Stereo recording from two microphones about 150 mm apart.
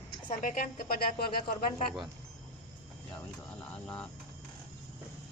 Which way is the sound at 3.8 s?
10° left (ahead or behind).